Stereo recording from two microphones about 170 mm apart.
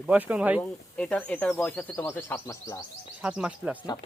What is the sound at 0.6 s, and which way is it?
Speech, 10° left (ahead or behind).